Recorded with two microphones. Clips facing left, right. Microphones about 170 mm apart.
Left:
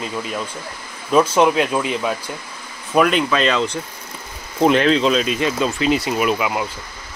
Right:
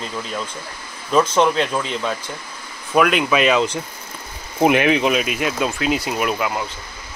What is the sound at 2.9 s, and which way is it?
Speech, 5° right (ahead or behind).